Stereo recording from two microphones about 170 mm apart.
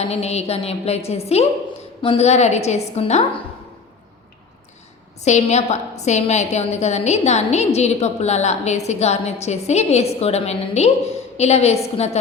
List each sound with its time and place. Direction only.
0.0 s a woman's voice: 40° left (ahead or behind)
5.2 s a woman's voice: 40° left (ahead or behind)